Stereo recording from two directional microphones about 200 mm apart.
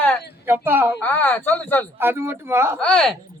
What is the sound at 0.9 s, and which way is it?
Speech, 10° left (ahead or behind).